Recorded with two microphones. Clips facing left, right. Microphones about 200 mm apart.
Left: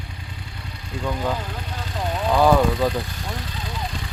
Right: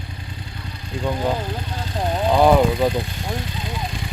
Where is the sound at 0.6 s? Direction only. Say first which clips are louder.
Right 3 dB; 30° right (ahead or behind).